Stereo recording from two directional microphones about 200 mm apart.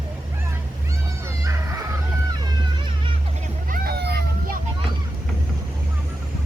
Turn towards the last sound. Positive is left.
turn(degrees=-55)  # may be behind; listen again after turning